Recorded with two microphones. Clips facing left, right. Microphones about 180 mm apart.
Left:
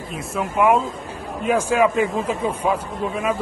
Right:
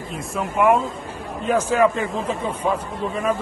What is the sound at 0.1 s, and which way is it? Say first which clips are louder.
A man's voice: left 1 dB; centre (ahead or behind).